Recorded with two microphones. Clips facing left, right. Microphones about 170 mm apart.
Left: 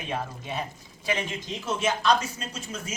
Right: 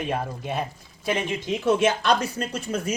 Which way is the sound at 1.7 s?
60° right (ahead or behind).